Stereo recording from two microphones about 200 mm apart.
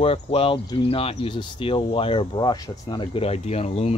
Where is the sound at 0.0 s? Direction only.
30° left (ahead or behind).